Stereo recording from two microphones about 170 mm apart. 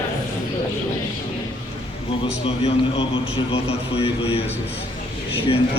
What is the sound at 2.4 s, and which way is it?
Speech, 35° left (ahead or behind).